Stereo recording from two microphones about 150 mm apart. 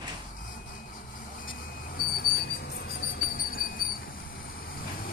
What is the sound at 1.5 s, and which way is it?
Train, 70° left (ahead or behind).